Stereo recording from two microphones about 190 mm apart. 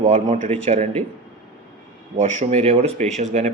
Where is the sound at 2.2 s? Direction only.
40° right (ahead or behind).